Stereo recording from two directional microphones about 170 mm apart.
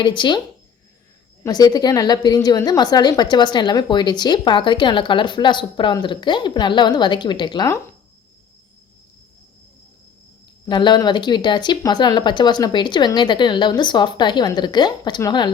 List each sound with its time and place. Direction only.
0.0 s a woman's voice: 25° left (ahead or behind)
1.5 s a woman's voice: 25° left (ahead or behind)
10.7 s a woman's voice: 25° left (ahead or behind)